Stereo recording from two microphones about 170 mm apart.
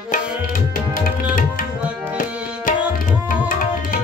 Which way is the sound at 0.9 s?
55° left (ahead or behind).